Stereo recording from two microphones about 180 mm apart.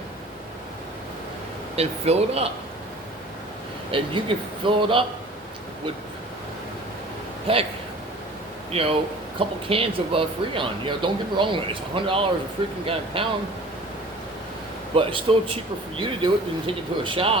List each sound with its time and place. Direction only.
1.7 s speech: 35° right (ahead or behind)
3.9 s speech: 30° right (ahead or behind)
7.5 s speech: 30° right (ahead or behind)
8.7 s speech: 30° right (ahead or behind)
14.9 s speech: 30° right (ahead or behind)